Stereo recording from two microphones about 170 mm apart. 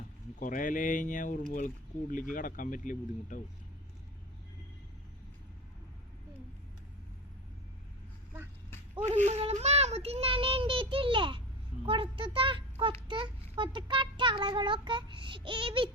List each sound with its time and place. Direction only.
0.3 s speech: 50° left (ahead or behind)
9.0 s child singing: 45° right (ahead or behind)
11.9 s a child's voice: 30° right (ahead or behind)